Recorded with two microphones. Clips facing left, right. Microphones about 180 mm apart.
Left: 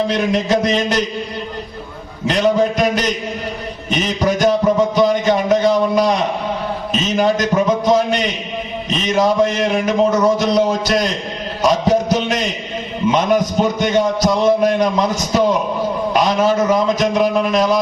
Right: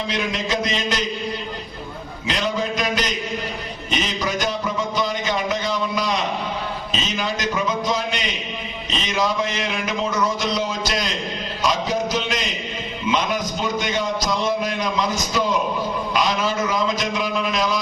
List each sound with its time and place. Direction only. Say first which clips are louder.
0.1 s a man's voice: left 8 dB; 45° left (ahead or behind)
2.3 s a man's voice: left 9 dB; 55° left (ahead or behind)
3.8 s a sound: left 7 dB; 55° left (ahead or behind)
7.2 s a sound: left 10 dB; 50° left (ahead or behind)
9.0 s a man's voice: left 8 dB; 45° left (ahead or behind)
11.6 s music: left 7 dB; 50° left (ahead or behind)
13.1 s a man's voice: left 7 dB; 50° left (ahead or behind)